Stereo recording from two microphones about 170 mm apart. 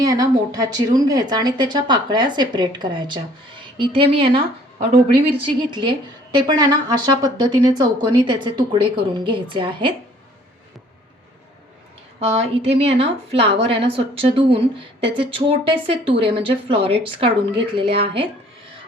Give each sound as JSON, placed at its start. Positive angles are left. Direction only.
{"t": 0.0, "sound": "a woman's voice", "side_deg": -20}
{"t": 5.4, "sound": "a woman's voice", "side_deg": -30}
{"t": 12.2, "sound": "a woman's voice", "side_deg": -35}